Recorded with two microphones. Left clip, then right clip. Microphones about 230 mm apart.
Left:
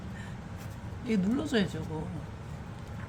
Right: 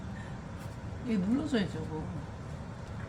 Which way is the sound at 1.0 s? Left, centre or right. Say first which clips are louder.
Left 1 dB; left.